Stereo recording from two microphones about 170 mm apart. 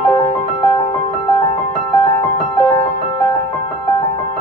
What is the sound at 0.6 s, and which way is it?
Music, 20° left (ahead or behind).